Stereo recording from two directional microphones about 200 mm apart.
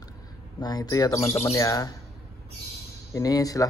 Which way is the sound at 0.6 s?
20° left (ahead or behind).